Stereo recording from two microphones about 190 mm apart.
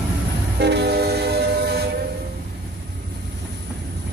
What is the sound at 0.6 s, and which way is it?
Train, 60° right (ahead or behind).